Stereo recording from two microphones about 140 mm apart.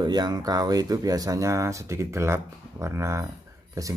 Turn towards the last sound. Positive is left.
turn(degrees=-25)  # may be behind; listen again after turning